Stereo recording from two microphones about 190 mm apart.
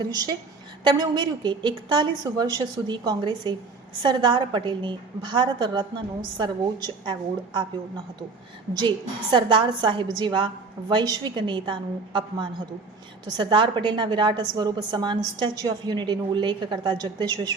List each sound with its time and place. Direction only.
0.0 s a woman's voice: 20° right (ahead or behind)
7.0 s a woman's voice: 25° right (ahead or behind)